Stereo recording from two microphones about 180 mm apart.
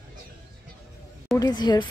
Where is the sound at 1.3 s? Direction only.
20° left (ahead or behind).